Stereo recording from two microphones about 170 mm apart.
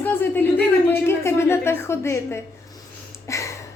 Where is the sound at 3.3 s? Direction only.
15° left (ahead or behind).